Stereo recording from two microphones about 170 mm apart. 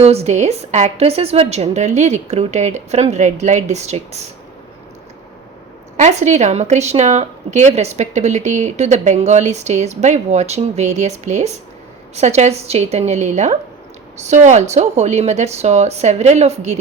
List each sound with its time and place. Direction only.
0.0 s a woman's voice: 40° right (ahead or behind)
6.0 s a woman's voice: 45° right (ahead or behind)